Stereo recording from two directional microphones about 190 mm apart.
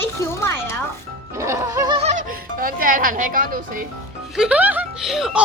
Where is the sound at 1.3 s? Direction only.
15° right (ahead or behind).